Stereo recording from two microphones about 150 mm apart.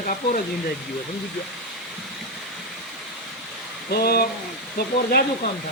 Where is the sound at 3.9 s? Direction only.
90° left.